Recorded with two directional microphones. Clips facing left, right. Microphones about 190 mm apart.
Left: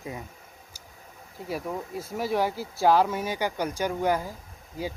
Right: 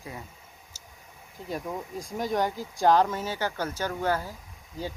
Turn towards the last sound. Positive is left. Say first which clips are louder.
# left 2 dB
turn(degrees=15)  # may be behind; listen again after turning